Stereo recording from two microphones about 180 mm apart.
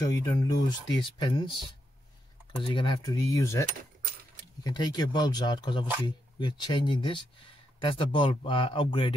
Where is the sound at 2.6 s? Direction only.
25° left (ahead or behind).